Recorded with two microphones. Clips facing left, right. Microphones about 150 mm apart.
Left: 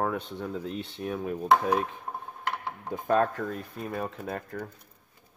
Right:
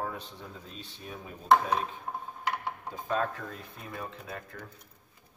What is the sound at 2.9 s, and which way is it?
Speech, 55° left (ahead or behind).